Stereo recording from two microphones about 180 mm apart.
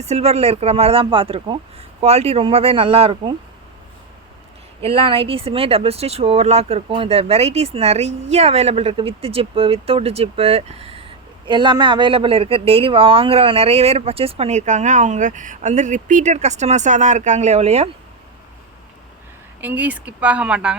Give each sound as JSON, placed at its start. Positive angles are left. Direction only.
{"t": 0.0, "sound": "speech", "side_deg": -35}
{"t": 4.8, "sound": "speech", "side_deg": -30}
{"t": 19.6, "sound": "speech", "side_deg": -10}